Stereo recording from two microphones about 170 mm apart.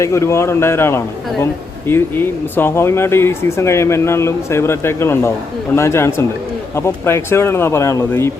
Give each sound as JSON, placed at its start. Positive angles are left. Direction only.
{"t": 0.0, "sound": "speech", "side_deg": 15}